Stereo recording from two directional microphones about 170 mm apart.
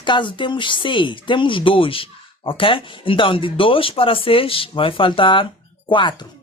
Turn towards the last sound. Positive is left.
turn(degrees=30)  # may be behind; listen again after turning